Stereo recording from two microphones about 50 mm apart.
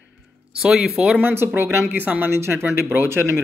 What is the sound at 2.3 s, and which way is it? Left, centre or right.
Speech, right.